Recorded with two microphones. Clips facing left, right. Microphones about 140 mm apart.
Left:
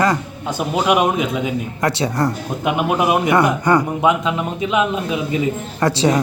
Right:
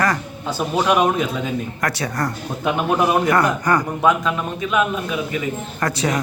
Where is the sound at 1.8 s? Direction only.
25° left (ahead or behind).